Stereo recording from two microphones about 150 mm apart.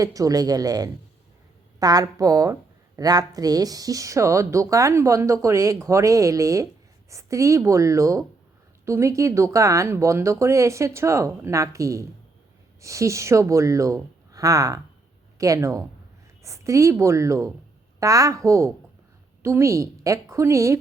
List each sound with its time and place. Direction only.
0.0 s a woman's voice: 25° right (ahead or behind)